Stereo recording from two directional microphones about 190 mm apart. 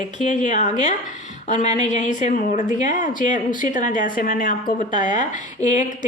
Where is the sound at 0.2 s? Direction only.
40° left (ahead or behind).